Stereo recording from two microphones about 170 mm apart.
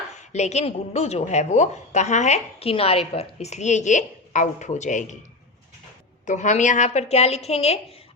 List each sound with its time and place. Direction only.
0.2 s a woman's voice: 40° left (ahead or behind)
6.2 s a woman's voice: 45° left (ahead or behind)